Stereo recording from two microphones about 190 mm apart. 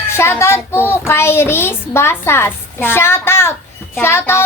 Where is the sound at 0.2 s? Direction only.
15° left (ahead or behind).